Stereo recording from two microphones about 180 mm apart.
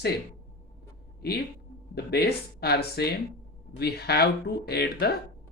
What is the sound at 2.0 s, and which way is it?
Speech, 60° left (ahead or behind).